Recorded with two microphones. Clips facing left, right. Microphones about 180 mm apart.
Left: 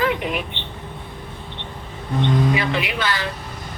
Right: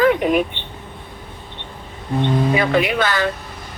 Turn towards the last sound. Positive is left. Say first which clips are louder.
# right 6 dB
turn(degrees=-50)  # may be behind; listen again after turning